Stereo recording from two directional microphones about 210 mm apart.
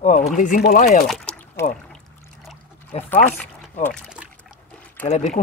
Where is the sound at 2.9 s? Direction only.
30° left (ahead or behind).